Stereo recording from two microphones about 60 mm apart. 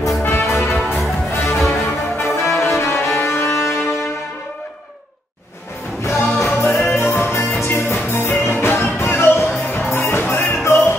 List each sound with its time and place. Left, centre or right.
0.3 s music: left
2.5 s cello: left
6.0 s music: left